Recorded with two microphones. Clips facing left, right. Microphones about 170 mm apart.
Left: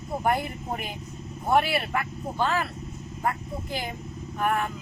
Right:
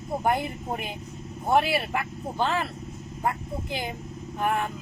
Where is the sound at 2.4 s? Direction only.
25° right (ahead or behind).